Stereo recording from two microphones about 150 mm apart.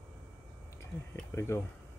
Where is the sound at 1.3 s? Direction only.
15° left (ahead or behind).